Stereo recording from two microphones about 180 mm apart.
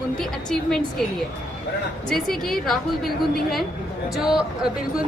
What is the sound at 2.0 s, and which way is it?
A woman's voice, centre (ahead or behind).